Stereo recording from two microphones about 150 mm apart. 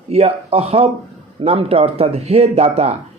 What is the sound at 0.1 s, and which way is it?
Speech, 45° right (ahead or behind).